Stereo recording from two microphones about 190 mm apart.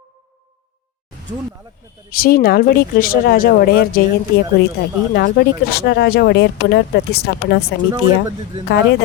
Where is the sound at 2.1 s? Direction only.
50° left (ahead or behind).